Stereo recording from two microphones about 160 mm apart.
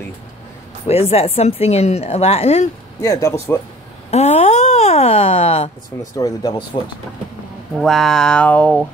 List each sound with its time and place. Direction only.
0.8 s speech: 40° left (ahead or behind)
3.0 s speech: 20° left (ahead or behind)
4.1 s speech: 40° left (ahead or behind)
6.1 s speech: 25° left (ahead or behind)
7.7 s speech: centre (ahead or behind)